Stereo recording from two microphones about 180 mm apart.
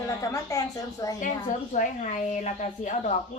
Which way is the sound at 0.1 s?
20° left (ahead or behind).